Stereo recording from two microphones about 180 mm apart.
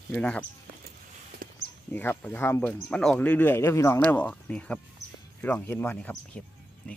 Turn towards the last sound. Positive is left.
turn(degrees=10)  # may be behind; listen again after turning